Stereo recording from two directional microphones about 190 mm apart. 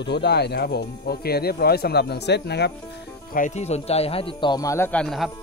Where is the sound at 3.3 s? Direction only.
40° left (ahead or behind); by 5.3 s centre (ahead or behind).